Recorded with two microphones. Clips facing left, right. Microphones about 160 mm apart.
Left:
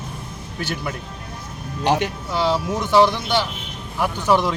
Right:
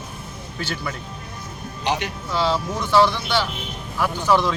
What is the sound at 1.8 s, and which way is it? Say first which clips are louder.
Speech: left 5 dB; 50° left (ahead or behind).